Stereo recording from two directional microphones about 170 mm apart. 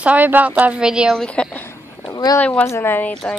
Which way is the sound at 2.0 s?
25° left (ahead or behind).